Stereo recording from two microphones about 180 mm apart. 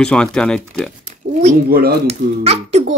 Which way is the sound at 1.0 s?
40° right (ahead or behind).